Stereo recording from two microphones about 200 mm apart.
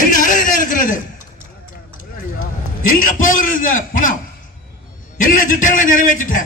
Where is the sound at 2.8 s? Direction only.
40° left (ahead or behind).